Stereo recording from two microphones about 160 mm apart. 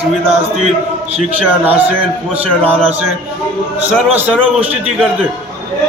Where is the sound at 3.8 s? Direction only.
10° right (ahead or behind).